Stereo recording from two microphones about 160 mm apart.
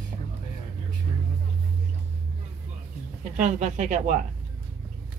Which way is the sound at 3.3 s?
50° right (ahead or behind).